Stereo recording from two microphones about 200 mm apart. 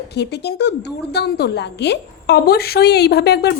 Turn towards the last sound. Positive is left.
turn(degrees=55)  # may be behind; listen again after turning